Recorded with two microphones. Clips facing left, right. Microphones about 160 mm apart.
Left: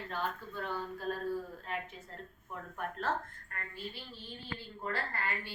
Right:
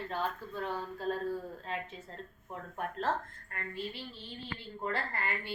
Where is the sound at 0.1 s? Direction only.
30° right (ahead or behind).